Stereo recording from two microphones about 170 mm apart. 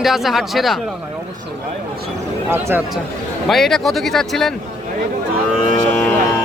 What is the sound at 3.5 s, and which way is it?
Speech, centre (ahead or behind).